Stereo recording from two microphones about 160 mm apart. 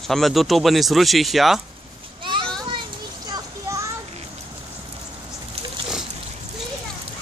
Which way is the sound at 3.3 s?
20° right (ahead or behind).